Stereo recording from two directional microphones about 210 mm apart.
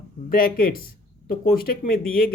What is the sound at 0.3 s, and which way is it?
Speech, 45° left (ahead or behind).